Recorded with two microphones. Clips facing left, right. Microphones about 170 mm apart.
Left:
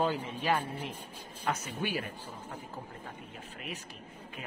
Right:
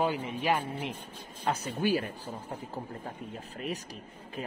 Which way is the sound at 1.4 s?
35° right (ahead or behind).